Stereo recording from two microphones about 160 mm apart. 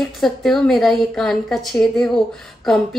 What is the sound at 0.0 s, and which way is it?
A woman's voice, centre (ahead or behind).